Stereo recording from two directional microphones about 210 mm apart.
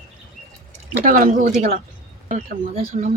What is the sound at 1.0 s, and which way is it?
A woman's voice, 40° right (ahead or behind).